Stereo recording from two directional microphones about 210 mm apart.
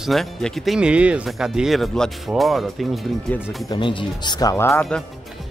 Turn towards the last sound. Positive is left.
turn(degrees=10)  # may be behind; listen again after turning